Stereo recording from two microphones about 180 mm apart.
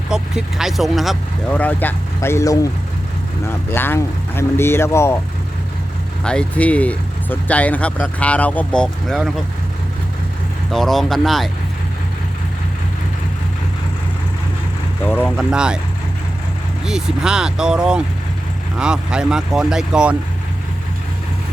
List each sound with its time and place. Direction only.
0.1 s speech: 5° right (ahead or behind)
1.5 s speech: 10° left (ahead or behind)
6.2 s speech: 5° left (ahead or behind)
10.7 s speech: centre (ahead or behind)
15.0 s speech: 10° left (ahead or behind)
15.4 s speech: 5° right (ahead or behind)
16.8 s speech: 5° right (ahead or behind)